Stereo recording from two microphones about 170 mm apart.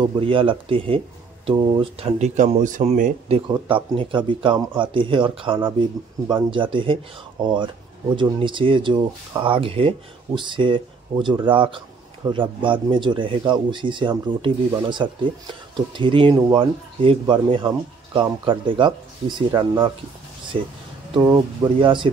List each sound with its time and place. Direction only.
0.0 s speech: 30° right (ahead or behind)